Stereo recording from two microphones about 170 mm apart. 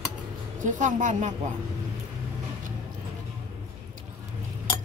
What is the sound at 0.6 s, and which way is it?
Speech, 50° right (ahead or behind).